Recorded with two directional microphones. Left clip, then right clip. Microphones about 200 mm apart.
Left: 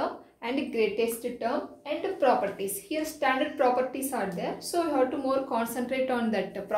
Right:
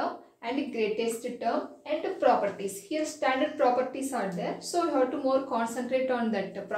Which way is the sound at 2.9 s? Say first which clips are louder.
Left 1 dB; 55° left (ahead or behind).